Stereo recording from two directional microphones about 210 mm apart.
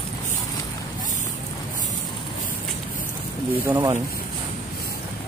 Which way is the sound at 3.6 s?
20° right (ahead or behind).